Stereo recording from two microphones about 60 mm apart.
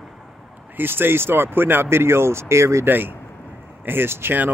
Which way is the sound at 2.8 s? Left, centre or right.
Right.